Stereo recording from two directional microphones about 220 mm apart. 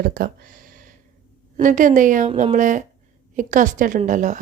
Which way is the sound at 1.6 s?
35° right (ahead or behind).